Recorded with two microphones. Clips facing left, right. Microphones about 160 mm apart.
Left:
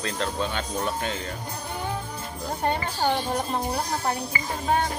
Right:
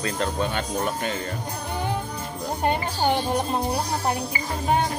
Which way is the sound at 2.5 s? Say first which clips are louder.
Right 2 dB; 15° right (ahead or behind).